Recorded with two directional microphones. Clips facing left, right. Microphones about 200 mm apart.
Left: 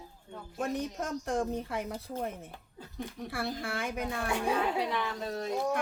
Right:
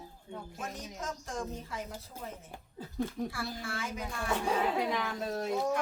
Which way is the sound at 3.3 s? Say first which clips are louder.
Left 4 dB; 60° left (ahead or behind).